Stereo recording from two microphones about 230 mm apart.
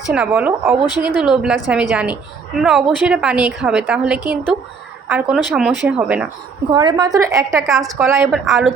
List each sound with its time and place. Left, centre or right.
0.1 s a woman's voice: centre
6.7 s speech: centre
7.5 s a woman's voice: centre
8.0 s speech: centre
8.3 s a woman's voice: centre